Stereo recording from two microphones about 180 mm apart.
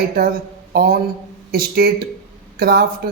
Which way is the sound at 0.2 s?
55° right (ahead or behind).